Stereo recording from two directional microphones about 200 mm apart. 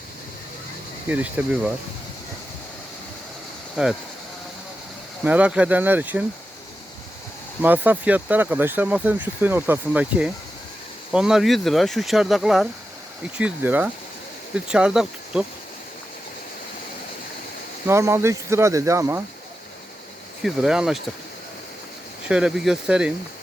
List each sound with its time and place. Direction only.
1.0 s speech: 10° right (ahead or behind)
3.8 s speech: 5° right (ahead or behind)
5.2 s speech: 5° right (ahead or behind)
7.6 s speech: 10° right (ahead or behind)
17.8 s speech: 10° right (ahead or behind)
20.4 s speech: centre (ahead or behind)
22.3 s speech: 5° right (ahead or behind)